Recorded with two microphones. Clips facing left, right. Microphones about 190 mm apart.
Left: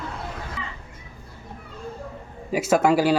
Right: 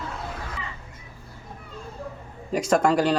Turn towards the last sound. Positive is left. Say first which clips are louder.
# left 2 dB
turn(degrees=5)  # may be behind; listen again after turning